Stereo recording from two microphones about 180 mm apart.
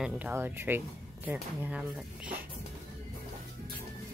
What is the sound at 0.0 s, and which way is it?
Speech, 10° right (ahead or behind).